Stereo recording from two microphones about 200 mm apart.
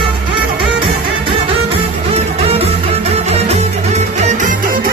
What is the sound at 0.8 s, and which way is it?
Music, 25° right (ahead or behind).